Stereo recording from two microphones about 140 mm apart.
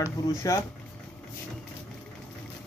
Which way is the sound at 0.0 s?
20° left (ahead or behind).